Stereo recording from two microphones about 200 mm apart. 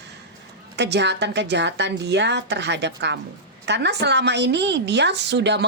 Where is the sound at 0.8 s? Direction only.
60° right (ahead or behind).